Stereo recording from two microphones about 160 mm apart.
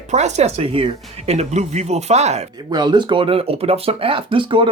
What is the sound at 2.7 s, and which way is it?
Speech, 25° right (ahead or behind).